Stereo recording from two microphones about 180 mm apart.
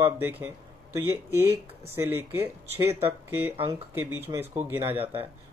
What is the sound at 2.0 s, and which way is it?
Speech, 15° right (ahead or behind).